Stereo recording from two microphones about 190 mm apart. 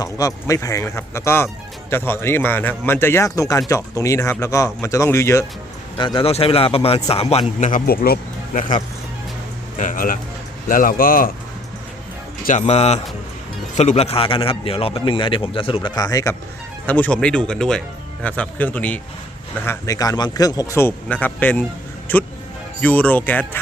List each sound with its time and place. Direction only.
0.0 s speech: 15° left (ahead or behind)
6.0 s a man's voice: 25° left (ahead or behind); by 11.3 s 50° left (ahead or behind)
12.5 s a man's voice: 35° left (ahead or behind); by 23.6 s 10° left (ahead or behind)